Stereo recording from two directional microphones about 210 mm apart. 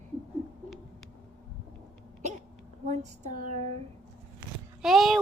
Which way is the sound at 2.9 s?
35° right (ahead or behind).